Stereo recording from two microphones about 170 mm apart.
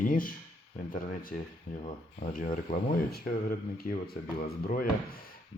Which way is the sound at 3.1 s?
60° left (ahead or behind).